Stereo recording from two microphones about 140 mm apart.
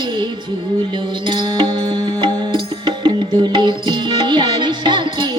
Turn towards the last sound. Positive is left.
turn(degrees=-35)  # may be behind; listen again after turning